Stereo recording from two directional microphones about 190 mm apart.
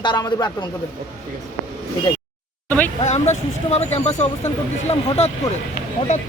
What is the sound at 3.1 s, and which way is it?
Speech, 35° left (ahead or behind).